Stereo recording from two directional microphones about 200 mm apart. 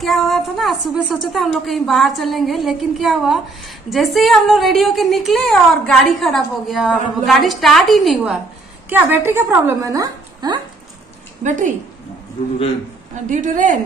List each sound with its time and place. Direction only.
0.0 s a woman's voice: centre (ahead or behind); by 10.6 s 20° right (ahead or behind)
11.4 s a woman's voice: 40° right (ahead or behind)
13.3 s a woman's voice: 40° right (ahead or behind)